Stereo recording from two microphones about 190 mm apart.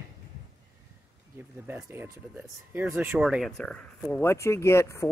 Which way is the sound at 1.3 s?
10° right (ahead or behind).